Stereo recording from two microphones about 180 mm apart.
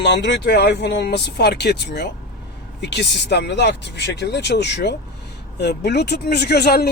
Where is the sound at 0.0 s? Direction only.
75° left (ahead or behind).